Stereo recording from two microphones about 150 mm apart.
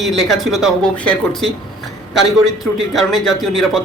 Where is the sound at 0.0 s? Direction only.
Centre (ahead or behind).